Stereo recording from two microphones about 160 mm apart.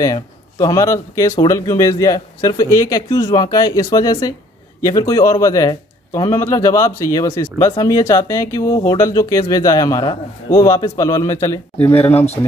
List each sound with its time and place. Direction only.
0.0 s a man's voice: 20° left (ahead or behind)
11.9 s speech: 40° left (ahead or behind)